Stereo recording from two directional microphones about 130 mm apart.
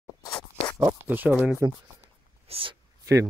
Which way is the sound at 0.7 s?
15° right (ahead or behind).